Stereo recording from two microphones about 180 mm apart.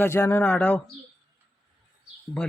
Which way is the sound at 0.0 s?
15° left (ahead or behind).